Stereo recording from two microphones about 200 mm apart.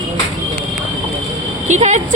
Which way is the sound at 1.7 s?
35° right (ahead or behind).